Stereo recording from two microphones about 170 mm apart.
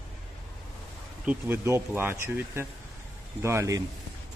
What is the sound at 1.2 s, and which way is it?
Speech, 10° right (ahead or behind).